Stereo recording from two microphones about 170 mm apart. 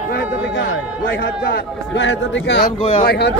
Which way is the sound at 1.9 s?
90° left.